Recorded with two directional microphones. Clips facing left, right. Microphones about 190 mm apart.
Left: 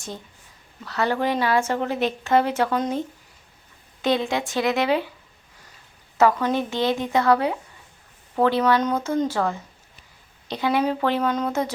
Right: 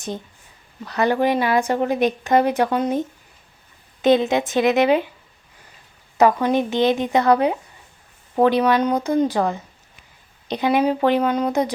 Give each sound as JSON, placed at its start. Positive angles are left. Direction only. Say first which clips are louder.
{"t": 0.9, "sound": "speech", "louder": "right 4 dB", "side_deg": -15}
{"t": 4.0, "sound": "a woman's voice", "louder": "right 6 dB", "side_deg": -20}
{"t": 6.1, "sound": "a woman's voice", "louder": "right 3 dB", "side_deg": -15}